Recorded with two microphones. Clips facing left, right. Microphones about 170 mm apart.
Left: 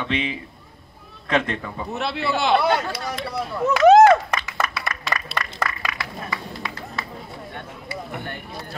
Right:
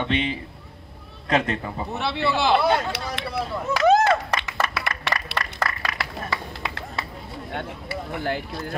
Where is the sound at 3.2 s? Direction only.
65° right (ahead or behind).